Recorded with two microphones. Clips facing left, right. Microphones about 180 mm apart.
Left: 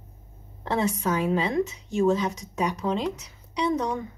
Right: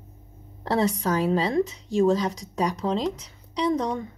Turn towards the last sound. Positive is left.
turn(degrees=-30)  # may be behind; listen again after turning